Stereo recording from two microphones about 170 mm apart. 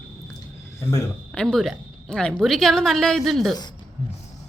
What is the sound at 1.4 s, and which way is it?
A woman's voice, centre (ahead or behind).